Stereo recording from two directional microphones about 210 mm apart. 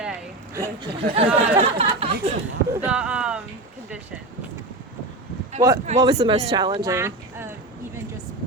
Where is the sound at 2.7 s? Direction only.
10° right (ahead or behind).